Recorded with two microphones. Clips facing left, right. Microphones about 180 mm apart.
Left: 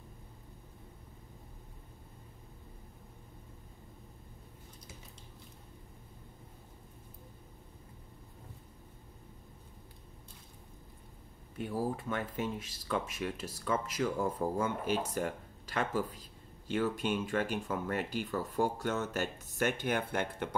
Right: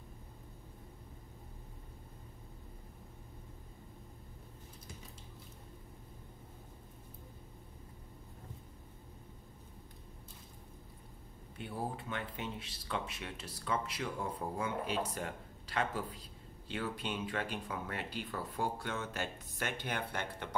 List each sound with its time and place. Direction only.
12.0 s speech: 45° left (ahead or behind)